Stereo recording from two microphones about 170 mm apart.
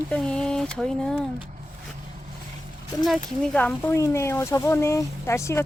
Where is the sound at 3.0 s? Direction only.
Centre (ahead or behind).